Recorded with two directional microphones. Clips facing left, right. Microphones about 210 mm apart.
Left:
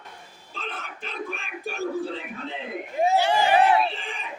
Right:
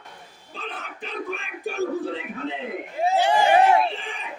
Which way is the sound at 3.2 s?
20° right (ahead or behind).